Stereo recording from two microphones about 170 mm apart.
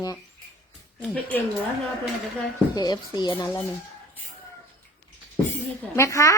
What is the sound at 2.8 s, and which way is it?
Speech, 25° left (ahead or behind).